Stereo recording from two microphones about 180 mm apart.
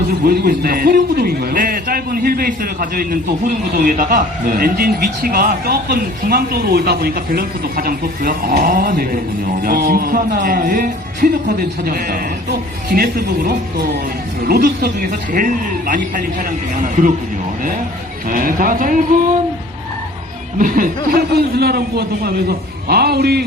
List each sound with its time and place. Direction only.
0.3 s a man's voice: 55° right (ahead or behind)
18.3 s a man's voice: 50° right (ahead or behind)
20.6 s speech: 50° right (ahead or behind)